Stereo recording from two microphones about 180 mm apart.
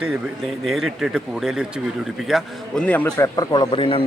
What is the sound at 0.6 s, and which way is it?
A man's voice, centre (ahead or behind).